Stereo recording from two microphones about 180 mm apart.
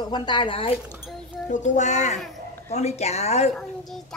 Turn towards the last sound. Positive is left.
turn(degrees=35)  # may be behind; listen again after turning